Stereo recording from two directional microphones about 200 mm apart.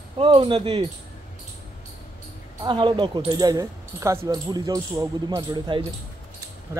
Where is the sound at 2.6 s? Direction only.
25° right (ahead or behind).